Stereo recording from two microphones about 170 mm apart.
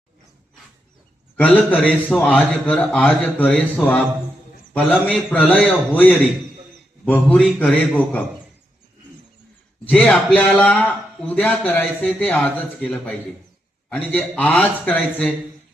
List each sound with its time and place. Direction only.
1.4 s a man's voice: 10° left (ahead or behind)
9.8 s a man's voice: 5° left (ahead or behind)